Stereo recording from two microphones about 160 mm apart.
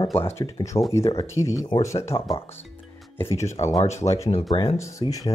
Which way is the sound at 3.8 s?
45° left (ahead or behind).